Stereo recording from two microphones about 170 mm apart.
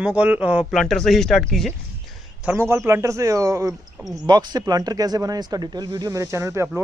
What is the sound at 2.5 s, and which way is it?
Speech, 15° right (ahead or behind).